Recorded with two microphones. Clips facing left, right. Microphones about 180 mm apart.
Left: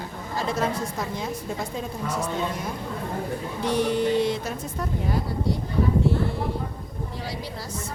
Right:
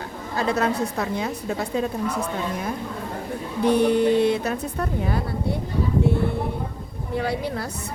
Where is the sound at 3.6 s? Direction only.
60° right (ahead or behind).